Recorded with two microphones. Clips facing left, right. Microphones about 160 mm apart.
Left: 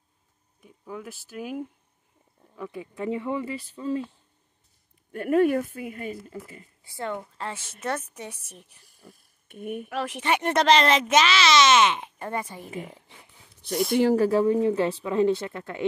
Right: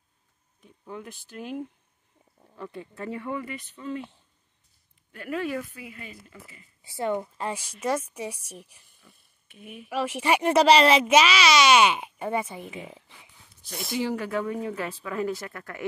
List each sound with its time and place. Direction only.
0.6 s speech: 5° left (ahead or behind); by 4.0 s 30° left (ahead or behind)
5.1 s speech: 50° left (ahead or behind)
6.8 s a child's voice: 20° right (ahead or behind)
9.0 s a sound: 50° left (ahead or behind)
9.8 s a child's voice: 5° right (ahead or behind)
13.6 s speech: 60° left (ahead or behind)
14.1 s speech: 35° left (ahead or behind)